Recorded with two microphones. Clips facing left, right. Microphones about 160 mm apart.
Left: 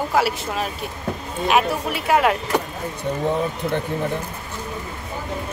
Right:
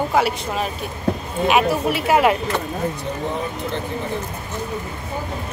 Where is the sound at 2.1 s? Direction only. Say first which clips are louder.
Right 1 dB; 5° right (ahead or behind).